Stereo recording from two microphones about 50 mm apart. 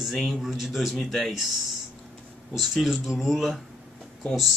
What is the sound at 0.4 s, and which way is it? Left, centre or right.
Speech, centre.